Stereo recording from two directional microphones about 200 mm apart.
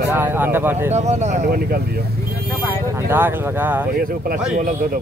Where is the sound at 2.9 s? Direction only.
10° right (ahead or behind).